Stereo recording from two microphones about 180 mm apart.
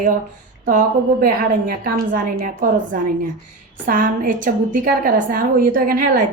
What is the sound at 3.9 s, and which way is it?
A woman's voice, 50° right (ahead or behind).